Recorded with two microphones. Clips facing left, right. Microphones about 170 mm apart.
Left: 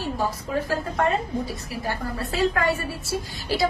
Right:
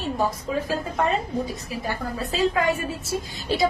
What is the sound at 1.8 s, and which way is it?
A woman's voice, 20° right (ahead or behind).